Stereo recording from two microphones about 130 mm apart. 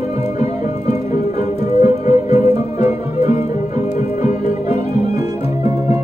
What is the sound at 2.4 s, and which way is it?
Music, 55° left (ahead or behind).